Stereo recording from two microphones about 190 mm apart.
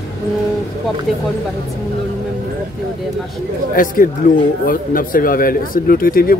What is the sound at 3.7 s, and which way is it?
Speech, 45° left (ahead or behind).